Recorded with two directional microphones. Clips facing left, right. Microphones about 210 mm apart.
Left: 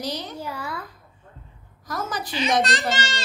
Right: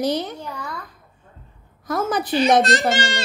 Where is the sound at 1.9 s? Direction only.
55° right (ahead or behind).